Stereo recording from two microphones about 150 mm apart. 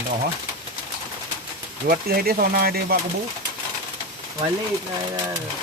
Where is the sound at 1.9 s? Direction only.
80° right.